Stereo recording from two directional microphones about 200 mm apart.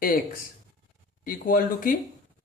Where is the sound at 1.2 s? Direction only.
45° left (ahead or behind).